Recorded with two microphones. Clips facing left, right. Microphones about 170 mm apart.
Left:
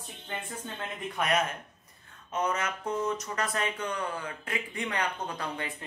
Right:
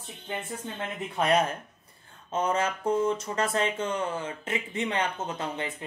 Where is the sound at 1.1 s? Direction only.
30° right (ahead or behind).